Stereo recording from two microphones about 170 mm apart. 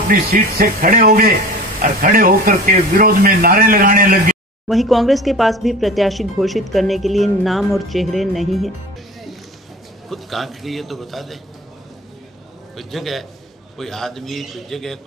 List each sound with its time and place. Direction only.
0.1 s speech: 60° right (ahead or behind)
4.6 s speech: centre (ahead or behind)
10.0 s speech: centre (ahead or behind)
12.7 s speech: centre (ahead or behind)